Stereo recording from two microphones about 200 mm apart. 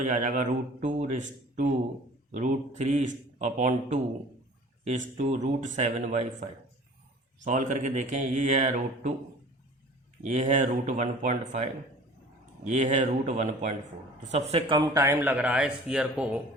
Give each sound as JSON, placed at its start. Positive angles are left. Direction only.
{"t": 0.0, "sound": "speech", "side_deg": -40}
{"t": 7.4, "sound": "speech", "side_deg": -40}
{"t": 10.2, "sound": "a man's voice", "side_deg": -35}